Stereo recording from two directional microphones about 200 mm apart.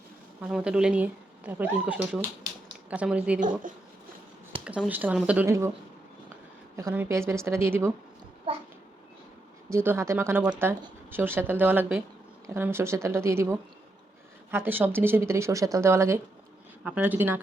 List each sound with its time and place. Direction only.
0.4 s speech: 5° right (ahead or behind)
4.5 s a sound: 25° right (ahead or behind)
4.9 s speech: 10° right (ahead or behind)
6.7 s speech: 15° right (ahead or behind)
8.5 s a child's voice: 30° right (ahead or behind)
9.6 s speech: 10° right (ahead or behind)